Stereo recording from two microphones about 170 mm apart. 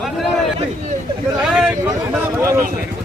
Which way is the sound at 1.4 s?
5° right (ahead or behind).